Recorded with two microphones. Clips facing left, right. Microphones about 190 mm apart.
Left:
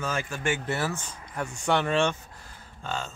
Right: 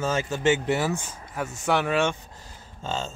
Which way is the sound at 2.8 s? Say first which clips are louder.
Right 3 dB; 25° right (ahead or behind).